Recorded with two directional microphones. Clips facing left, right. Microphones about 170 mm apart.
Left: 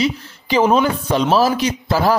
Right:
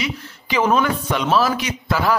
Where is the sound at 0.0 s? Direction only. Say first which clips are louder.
Left 7 dB; 35° left (ahead or behind).